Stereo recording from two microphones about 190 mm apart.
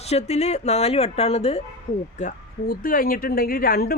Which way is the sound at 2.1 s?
45° left (ahead or behind).